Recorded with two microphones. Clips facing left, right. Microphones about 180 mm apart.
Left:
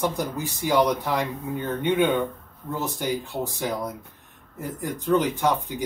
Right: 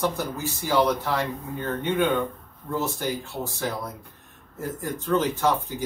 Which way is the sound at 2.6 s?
15° left (ahead or behind).